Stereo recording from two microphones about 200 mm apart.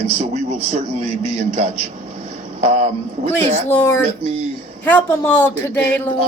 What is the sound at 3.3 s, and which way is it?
Speech, 10° left (ahead or behind).